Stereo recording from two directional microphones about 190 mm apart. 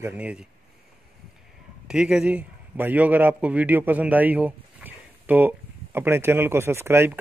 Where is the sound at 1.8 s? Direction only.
5° right (ahead or behind).